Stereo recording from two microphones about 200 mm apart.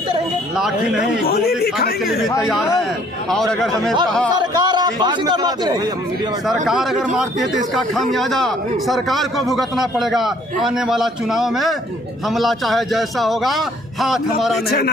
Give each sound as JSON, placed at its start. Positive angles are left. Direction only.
{"t": 0.5, "sound": "a man's voice", "side_deg": -5}
{"t": 1.2, "sound": "a man's voice", "side_deg": 50}
{"t": 2.5, "sound": "a man's voice", "side_deg": 0}
{"t": 4.4, "sound": "a man's voice", "side_deg": -20}
{"t": 6.5, "sound": "a man's voice", "side_deg": 0}
{"t": 14.7, "sound": "a man's voice", "side_deg": 50}